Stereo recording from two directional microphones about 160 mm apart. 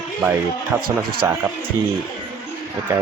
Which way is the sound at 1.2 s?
15° right (ahead or behind).